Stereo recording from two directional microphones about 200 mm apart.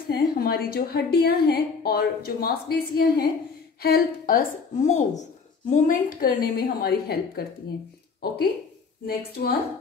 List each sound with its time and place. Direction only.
0.1 s a woman's voice: 50° left (ahead or behind)
9.0 s a woman's voice: 50° left (ahead or behind)